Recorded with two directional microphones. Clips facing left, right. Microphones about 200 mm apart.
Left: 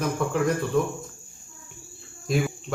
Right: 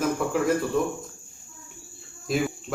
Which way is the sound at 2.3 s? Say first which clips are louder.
Even; centre (ahead or behind).